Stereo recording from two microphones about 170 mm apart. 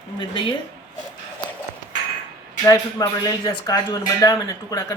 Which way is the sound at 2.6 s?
20° left (ahead or behind).